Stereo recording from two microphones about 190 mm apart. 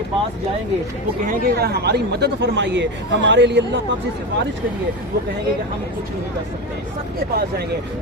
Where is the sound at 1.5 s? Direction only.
55° right (ahead or behind).